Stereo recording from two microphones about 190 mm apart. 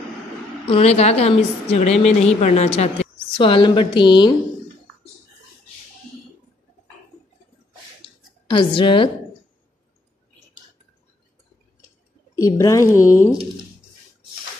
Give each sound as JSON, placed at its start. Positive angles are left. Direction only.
{"t": 0.7, "sound": "a woman's voice", "side_deg": 30}
{"t": 8.5, "sound": "a woman's voice", "side_deg": 25}
{"t": 12.4, "sound": "speech", "side_deg": 15}